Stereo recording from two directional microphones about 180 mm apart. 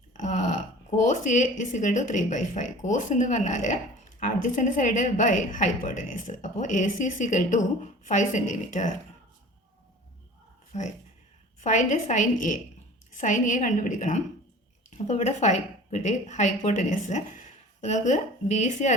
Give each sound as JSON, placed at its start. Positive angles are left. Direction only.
{"t": 0.1, "sound": "a woman's voice", "side_deg": 45}
{"t": 10.7, "sound": "a woman's voice", "side_deg": 40}